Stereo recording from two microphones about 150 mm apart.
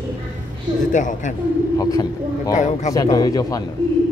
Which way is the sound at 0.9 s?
55° left (ahead or behind).